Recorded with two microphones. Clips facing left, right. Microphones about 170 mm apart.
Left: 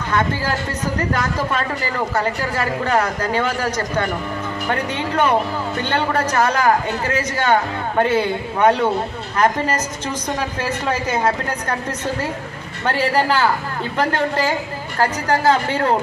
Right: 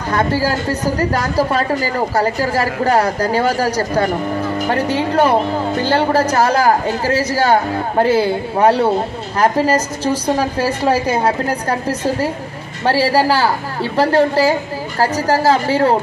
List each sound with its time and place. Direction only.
0.1 s speech: 35° right (ahead or behind)